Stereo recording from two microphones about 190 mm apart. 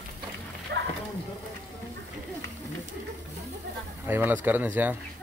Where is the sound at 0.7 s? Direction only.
60° right (ahead or behind).